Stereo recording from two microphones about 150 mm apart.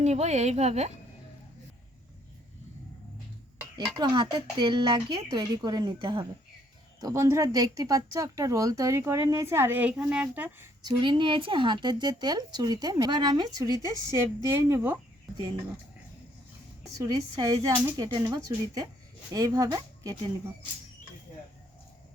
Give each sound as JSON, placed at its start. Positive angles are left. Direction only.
{"t": 0.0, "sound": "a woman's voice", "side_deg": -50}
{"t": 3.8, "sound": "speech", "side_deg": -30}
{"t": 7.0, "sound": "speech", "side_deg": -20}
{"t": 10.8, "sound": "speech", "side_deg": -30}
{"t": 17.0, "sound": "speech", "side_deg": -25}